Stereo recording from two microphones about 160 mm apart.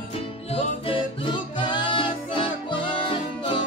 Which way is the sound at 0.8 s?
35° left (ahead or behind).